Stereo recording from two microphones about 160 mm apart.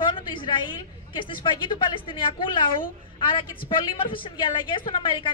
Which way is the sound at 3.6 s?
35° left (ahead or behind).